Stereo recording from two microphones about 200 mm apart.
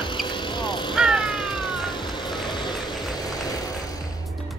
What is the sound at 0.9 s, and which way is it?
Vehicle, centre (ahead or behind).